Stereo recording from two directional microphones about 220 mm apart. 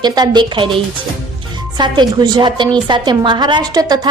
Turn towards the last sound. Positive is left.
turn(degrees=-15)  # may be behind; listen again after turning